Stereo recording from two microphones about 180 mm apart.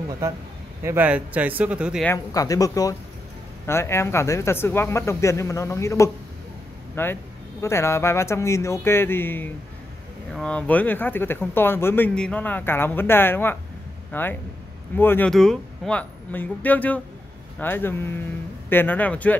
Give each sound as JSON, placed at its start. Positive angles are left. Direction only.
{"t": 0.8, "sound": "speech", "side_deg": -10}
{"t": 2.1, "sound": "speech", "side_deg": 20}